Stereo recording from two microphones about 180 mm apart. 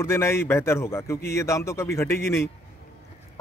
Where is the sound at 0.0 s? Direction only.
15° left (ahead or behind).